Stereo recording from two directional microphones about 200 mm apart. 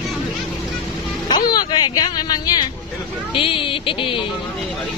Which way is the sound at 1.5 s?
20° left (ahead or behind).